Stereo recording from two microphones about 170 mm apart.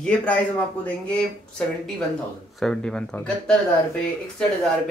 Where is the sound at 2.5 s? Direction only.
5° left (ahead or behind).